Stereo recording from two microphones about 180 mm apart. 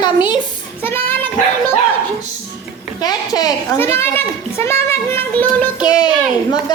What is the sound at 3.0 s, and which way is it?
A woman's voice, 20° left (ahead or behind).